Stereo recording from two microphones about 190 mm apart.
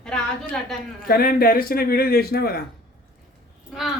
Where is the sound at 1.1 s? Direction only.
55° left (ahead or behind).